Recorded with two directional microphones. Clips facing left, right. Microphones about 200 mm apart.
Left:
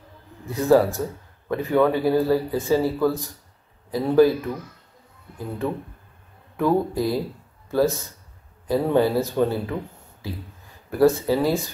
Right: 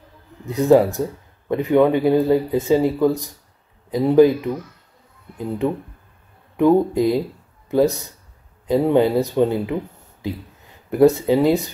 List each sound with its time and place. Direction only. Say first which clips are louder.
0.5 s speech: right 3 dB; 20° right (ahead or behind)
6.5 s speech: right 6 dB; 20° right (ahead or behind)